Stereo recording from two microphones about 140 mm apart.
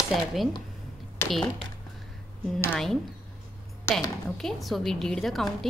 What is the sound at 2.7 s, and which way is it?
Speech, 5° left (ahead or behind).